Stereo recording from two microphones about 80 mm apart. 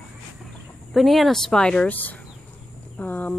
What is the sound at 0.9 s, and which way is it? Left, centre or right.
Speech, centre.